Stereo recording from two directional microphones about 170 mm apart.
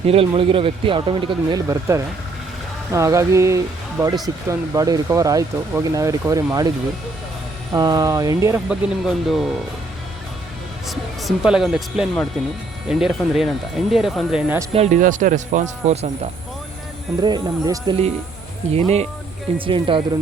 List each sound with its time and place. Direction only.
0.0 s speech: 35° right (ahead or behind); by 6.7 s 20° right (ahead or behind)
7.7 s speech: 20° right (ahead or behind)
8.7 s speech: centre (ahead or behind)
10.8 s speech: centre (ahead or behind)
14.7 s speech: 40° right (ahead or behind)
17.2 s speech: 25° right (ahead or behind)
18.7 s speech: 35° right (ahead or behind)